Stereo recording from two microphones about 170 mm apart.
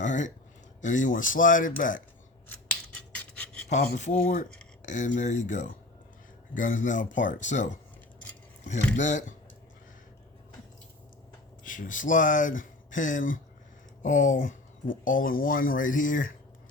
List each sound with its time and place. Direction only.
0.0 s speech: 45° left (ahead or behind)
3.3 s a sound: 5° left (ahead or behind)
3.7 s speech: 45° left (ahead or behind)
9.0 s speech: 45° left (ahead or behind)
11.6 s speech: 50° left (ahead or behind)